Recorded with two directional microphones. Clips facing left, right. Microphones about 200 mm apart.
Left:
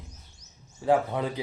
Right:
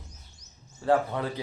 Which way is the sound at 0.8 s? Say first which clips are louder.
Left 1 dB; 15° left (ahead or behind).